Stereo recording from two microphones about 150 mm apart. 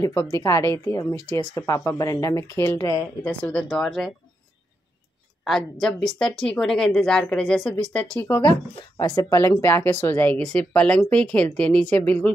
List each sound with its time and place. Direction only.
0.0 s speech: 20° left (ahead or behind); by 4.1 s centre (ahead or behind)
5.4 s speech: centre (ahead or behind)
8.4 s speech: 30° left (ahead or behind); by 12.3 s 10° left (ahead or behind)